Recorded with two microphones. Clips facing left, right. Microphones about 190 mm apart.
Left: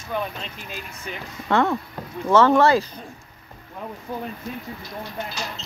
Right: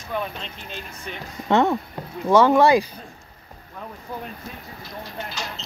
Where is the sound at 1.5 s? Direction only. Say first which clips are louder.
Right 2 dB; 20° right (ahead or behind).